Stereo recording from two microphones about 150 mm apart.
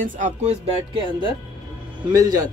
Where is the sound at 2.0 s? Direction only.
25° right (ahead or behind).